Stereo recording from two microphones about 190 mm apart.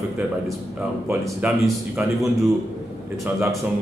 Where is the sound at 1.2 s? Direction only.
5° right (ahead or behind).